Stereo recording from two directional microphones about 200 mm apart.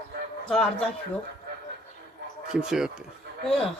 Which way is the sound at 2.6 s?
5° right (ahead or behind).